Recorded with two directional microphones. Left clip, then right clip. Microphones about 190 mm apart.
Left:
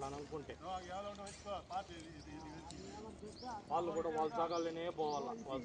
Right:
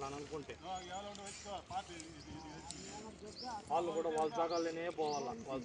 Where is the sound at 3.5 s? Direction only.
45° right (ahead or behind).